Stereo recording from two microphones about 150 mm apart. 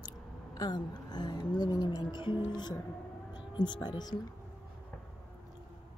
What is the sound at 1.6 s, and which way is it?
Speech, 25° left (ahead or behind).